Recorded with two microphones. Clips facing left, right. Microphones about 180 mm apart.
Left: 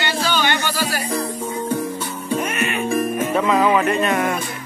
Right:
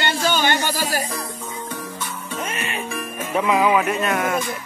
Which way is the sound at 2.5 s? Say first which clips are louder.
Left 5 dB; 30° right (ahead or behind).